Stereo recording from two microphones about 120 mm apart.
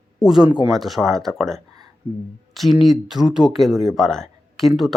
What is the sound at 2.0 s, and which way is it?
Speech, 45° right (ahead or behind).